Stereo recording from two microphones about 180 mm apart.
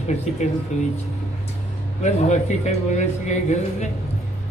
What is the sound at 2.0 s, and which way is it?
Speech, 40° left (ahead or behind).